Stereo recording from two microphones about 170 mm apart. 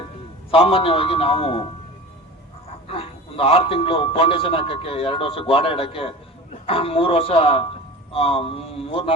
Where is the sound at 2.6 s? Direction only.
35° left (ahead or behind).